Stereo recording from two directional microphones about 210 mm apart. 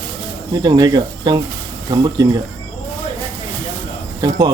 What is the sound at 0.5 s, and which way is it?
Speech, 20° right (ahead or behind).